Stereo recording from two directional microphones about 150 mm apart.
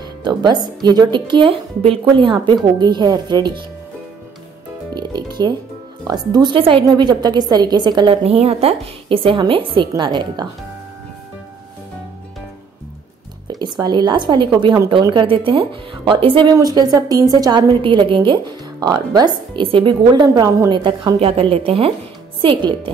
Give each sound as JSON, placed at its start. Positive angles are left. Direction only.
{"t": 0.2, "sound": "speech", "side_deg": -30}
{"t": 4.9, "sound": "music", "side_deg": -30}
{"t": 6.0, "sound": "a woman's voice", "side_deg": -25}
{"t": 13.5, "sound": "a woman's voice", "side_deg": -25}
{"t": 16.5, "sound": "a woman's voice", "side_deg": -25}
{"t": 20.2, "sound": "a woman's voice", "side_deg": -20}